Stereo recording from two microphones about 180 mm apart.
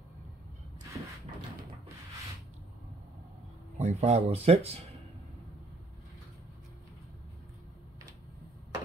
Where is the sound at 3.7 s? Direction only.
35° right (ahead or behind).